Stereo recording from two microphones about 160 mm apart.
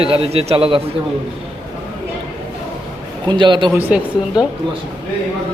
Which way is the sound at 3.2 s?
30° right (ahead or behind).